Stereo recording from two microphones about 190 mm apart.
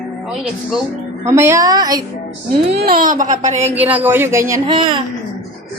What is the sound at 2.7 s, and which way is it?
A child's voice, 55° right (ahead or behind).